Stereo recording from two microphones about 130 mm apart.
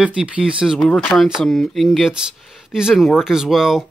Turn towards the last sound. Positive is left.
turn(degrees=-5)  # may be behind; listen again after turning